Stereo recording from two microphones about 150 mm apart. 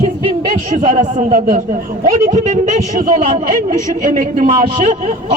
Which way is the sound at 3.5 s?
65° right (ahead or behind).